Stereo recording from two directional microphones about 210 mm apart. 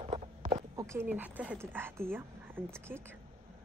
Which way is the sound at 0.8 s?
10° right (ahead or behind).